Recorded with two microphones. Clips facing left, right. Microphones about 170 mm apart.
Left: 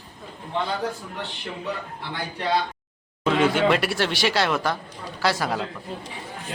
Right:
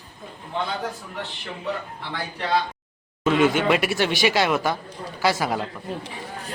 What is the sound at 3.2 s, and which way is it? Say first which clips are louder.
Speech: right 1 dB; 5° right (ahead or behind).